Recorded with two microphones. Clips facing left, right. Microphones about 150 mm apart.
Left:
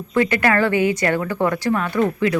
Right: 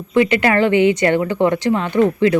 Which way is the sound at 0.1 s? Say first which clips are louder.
Right 3 dB; 20° right (ahead or behind).